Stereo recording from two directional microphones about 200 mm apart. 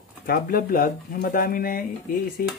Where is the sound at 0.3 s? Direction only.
45° left (ahead or behind).